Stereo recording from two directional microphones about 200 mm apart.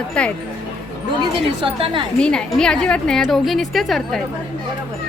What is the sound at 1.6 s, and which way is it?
Speech, 25° right (ahead or behind).